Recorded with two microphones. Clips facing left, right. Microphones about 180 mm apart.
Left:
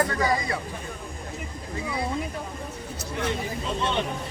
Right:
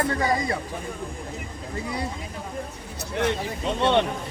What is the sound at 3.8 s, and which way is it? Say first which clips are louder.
Speech: right 7 dB; 70° right (ahead or behind).